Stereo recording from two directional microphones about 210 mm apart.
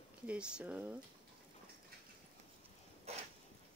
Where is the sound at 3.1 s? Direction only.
30° right (ahead or behind).